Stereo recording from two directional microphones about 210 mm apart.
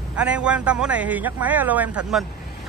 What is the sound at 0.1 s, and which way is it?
A man's voice, 5° right (ahead or behind).